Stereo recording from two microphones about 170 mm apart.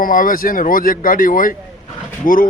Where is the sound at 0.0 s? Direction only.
55° left (ahead or behind).